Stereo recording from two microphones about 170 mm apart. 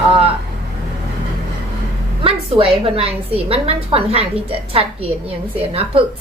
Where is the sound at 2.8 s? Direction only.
35° right (ahead or behind).